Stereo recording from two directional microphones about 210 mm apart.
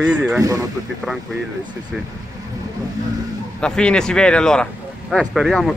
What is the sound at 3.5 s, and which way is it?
Speech, 5° left (ahead or behind).